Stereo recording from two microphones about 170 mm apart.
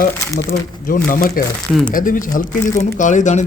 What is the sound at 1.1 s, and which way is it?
Speech, 55° left (ahead or behind).